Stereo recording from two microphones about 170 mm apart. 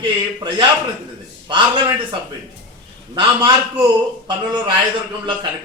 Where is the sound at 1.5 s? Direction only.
30° right (ahead or behind).